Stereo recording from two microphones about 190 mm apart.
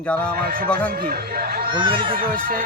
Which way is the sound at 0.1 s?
5° left (ahead or behind).